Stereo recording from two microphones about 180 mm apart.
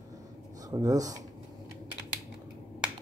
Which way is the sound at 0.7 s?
20° right (ahead or behind).